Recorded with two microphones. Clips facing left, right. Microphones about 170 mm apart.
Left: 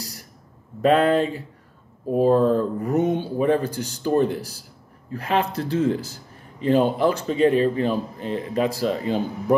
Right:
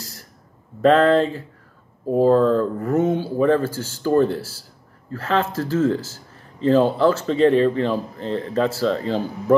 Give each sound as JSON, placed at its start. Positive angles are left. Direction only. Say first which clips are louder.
{"t": 0.8, "sound": "speech", "louder": "right 3 dB", "side_deg": 15}